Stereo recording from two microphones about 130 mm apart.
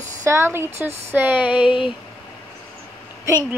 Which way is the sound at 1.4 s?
40° left (ahead or behind).